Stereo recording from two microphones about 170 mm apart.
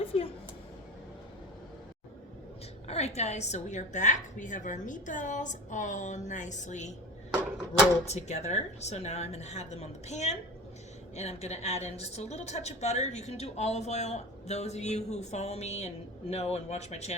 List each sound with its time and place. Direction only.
0.0 s a sound: 35° left (ahead or behind)
2.8 s a woman's voice: 40° left (ahead or behind)
8.0 s a woman's voice: 40° left (ahead or behind)